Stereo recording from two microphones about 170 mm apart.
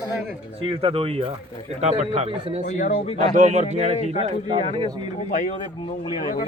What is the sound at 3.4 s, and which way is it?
Speech, 45° right (ahead or behind).